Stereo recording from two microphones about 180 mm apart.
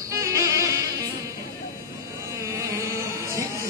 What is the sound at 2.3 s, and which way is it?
Music, 15° right (ahead or behind).